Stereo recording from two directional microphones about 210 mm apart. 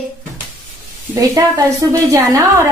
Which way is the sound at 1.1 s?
15° right (ahead or behind).